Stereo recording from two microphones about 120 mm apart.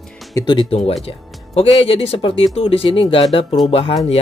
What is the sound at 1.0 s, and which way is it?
Speech, 50° left (ahead or behind).